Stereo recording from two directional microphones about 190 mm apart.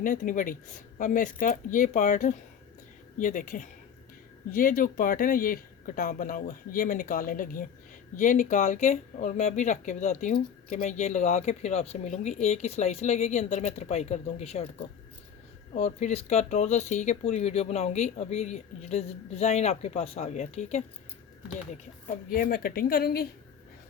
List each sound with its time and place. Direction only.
0.0 s speech: 45° left (ahead or behind)
22.0 s speech: 50° left (ahead or behind)